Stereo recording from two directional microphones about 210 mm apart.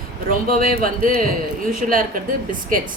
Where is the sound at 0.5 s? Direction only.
40° right (ahead or behind).